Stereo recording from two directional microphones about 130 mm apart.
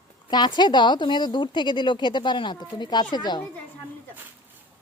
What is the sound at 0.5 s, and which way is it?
Speech, 35° left (ahead or behind).